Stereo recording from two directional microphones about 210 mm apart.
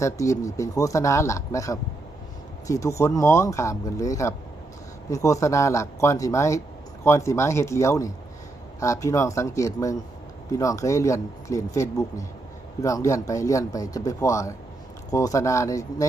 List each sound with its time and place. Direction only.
0.0 s speech: 15° left (ahead or behind)